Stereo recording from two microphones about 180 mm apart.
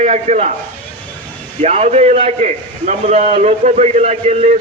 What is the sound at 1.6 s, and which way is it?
A man's voice, 35° right (ahead or behind).